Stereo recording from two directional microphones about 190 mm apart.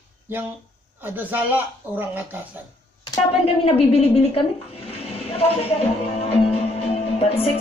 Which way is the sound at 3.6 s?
30° left (ahead or behind).